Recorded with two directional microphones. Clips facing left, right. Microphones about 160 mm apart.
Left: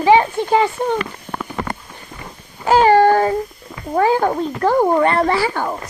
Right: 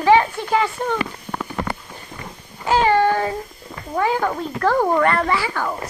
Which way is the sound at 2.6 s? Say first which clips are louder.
Left 5 dB; 40° left (ahead or behind).